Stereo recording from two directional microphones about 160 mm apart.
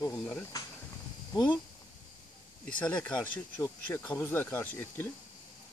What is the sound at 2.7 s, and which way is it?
Speech, 10° left (ahead or behind).